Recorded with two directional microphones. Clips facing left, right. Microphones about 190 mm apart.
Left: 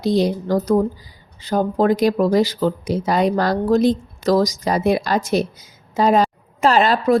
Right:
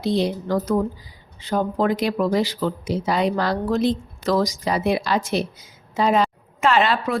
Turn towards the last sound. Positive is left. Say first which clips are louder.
# left 4 dB
turn(degrees=40)  # may be behind; listen again after turning